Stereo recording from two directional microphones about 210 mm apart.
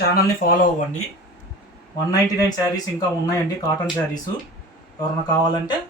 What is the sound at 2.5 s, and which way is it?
Speech, 20° left (ahead or behind).